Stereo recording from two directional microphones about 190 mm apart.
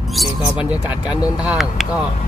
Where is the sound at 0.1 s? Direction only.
5° right (ahead or behind).